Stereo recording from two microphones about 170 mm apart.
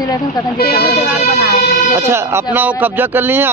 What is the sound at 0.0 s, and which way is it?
Speech, 25° left (ahead or behind).